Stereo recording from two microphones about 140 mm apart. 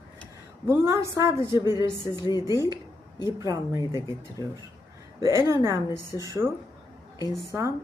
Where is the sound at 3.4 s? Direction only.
25° right (ahead or behind).